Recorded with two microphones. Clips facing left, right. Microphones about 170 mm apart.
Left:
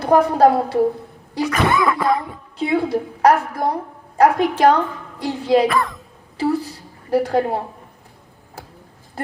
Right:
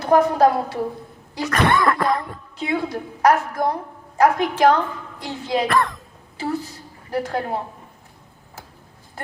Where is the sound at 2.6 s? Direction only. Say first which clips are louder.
Left 5 dB; 30° left (ahead or behind).